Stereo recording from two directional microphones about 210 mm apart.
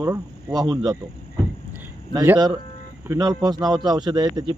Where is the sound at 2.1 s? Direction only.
15° right (ahead or behind).